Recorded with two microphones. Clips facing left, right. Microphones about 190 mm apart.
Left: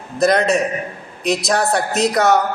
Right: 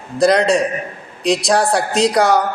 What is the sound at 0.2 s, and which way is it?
A man's voice, 30° right (ahead or behind).